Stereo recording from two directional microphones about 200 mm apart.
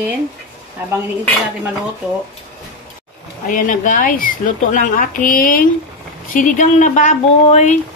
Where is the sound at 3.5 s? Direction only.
40° left (ahead or behind).